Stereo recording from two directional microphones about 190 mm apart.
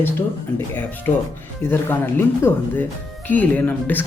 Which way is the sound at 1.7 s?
10° left (ahead or behind).